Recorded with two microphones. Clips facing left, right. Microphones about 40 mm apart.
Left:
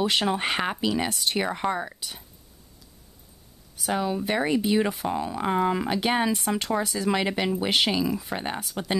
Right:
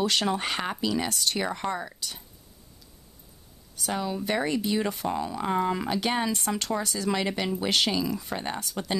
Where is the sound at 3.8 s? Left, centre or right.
Centre.